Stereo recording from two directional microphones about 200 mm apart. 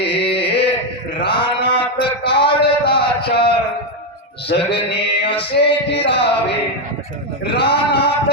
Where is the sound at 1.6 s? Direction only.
55° left (ahead or behind).